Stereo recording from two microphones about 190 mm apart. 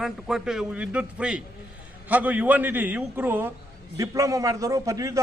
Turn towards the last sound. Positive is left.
turn(degrees=-15)  # may be behind; listen again after turning